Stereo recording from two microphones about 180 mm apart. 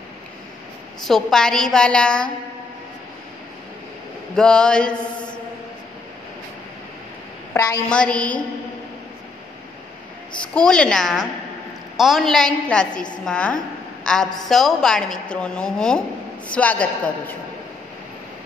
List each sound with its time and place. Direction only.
1.0 s a woman's voice: centre (ahead or behind)
4.4 s mantra: 5° left (ahead or behind)
7.5 s a woman's voice: 15° left (ahead or behind)
7.9 s a woman's voice: 5° left (ahead or behind)
10.5 s a woman's voice: 5° left (ahead or behind)